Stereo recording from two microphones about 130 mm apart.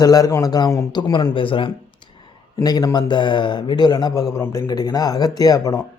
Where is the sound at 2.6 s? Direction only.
30° left (ahead or behind).